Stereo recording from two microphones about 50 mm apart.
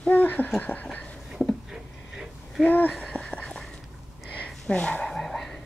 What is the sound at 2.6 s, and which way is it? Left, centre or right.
Speech, left.